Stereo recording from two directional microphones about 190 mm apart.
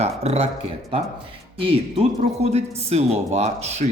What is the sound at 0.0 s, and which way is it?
Speech, 35° right (ahead or behind).